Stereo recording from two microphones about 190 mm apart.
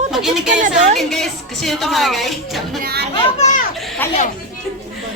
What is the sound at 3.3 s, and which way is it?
Speech, 35° left (ahead or behind).